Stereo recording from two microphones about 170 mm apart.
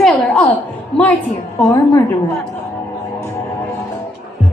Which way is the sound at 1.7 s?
15° left (ahead or behind).